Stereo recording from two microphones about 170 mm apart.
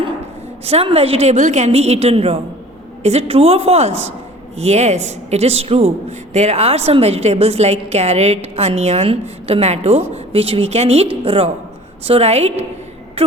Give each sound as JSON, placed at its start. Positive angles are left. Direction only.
{"t": 0.6, "sound": "a woman's voice", "side_deg": -35}